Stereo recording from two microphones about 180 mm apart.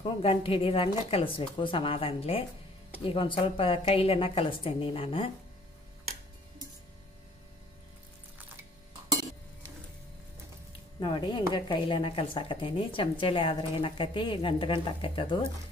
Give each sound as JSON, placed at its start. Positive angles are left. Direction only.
{"t": 0.0, "sound": "a woman's voice", "side_deg": 30}
{"t": 11.0, "sound": "a woman's voice", "side_deg": 25}